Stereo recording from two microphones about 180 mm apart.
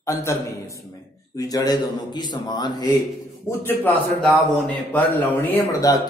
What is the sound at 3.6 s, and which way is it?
Speech, 10° left (ahead or behind).